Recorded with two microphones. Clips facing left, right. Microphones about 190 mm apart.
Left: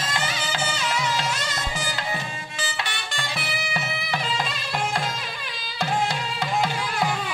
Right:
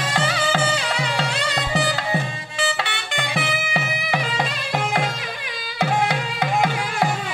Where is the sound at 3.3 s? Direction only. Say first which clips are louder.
Right 6 dB; 60° right (ahead or behind).